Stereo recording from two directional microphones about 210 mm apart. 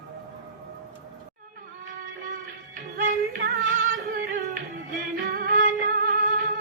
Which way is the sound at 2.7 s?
40° right (ahead or behind).